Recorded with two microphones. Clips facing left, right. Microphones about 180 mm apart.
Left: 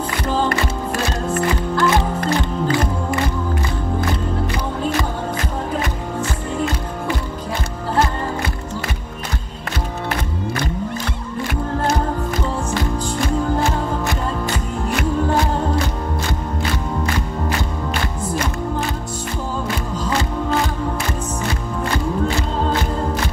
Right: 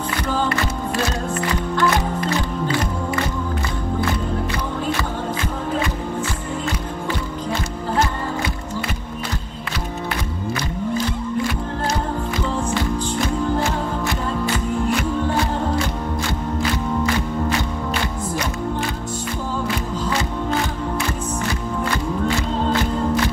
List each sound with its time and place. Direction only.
1.3 s music: 50° left (ahead or behind)